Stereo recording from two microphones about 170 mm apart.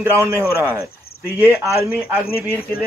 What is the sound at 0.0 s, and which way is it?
Speech, 15° right (ahead or behind).